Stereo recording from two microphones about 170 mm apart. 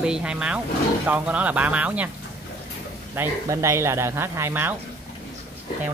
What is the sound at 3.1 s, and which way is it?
Speech, 15° right (ahead or behind).